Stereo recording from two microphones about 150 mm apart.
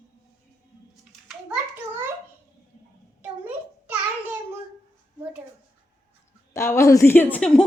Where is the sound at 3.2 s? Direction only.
10° right (ahead or behind).